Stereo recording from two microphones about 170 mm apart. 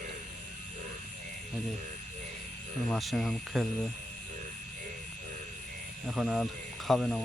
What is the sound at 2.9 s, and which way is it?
Speech, centre (ahead or behind).